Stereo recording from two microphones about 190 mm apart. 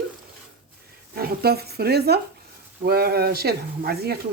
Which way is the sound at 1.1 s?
55° right (ahead or behind).